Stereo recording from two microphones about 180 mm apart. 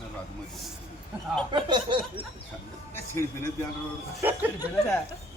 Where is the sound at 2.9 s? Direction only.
15° left (ahead or behind).